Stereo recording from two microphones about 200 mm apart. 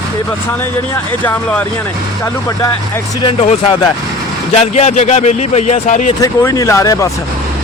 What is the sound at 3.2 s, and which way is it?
Speech, 30° left (ahead or behind).